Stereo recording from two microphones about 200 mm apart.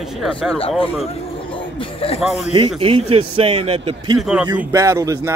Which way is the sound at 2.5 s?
25° right (ahead or behind).